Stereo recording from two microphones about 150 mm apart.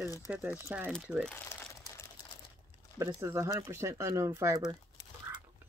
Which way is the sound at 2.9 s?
20° right (ahead or behind).